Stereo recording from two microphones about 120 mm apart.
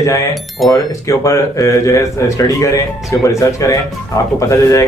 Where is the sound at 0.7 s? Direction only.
25° left (ahead or behind).